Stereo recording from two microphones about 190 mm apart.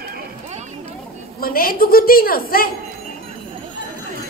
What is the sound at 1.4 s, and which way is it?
A woman's voice, 50° left (ahead or behind).